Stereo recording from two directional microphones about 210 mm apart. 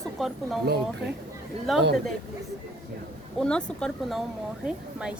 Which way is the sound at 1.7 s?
Centre (ahead or behind).